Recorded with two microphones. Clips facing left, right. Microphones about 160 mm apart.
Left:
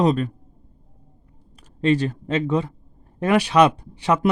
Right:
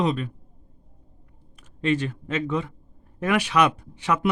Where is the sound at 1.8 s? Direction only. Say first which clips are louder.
Left 4 dB; 35° left (ahead or behind).